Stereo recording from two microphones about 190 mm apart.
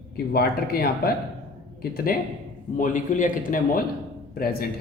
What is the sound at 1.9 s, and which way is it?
A man's voice, 50° left (ahead or behind).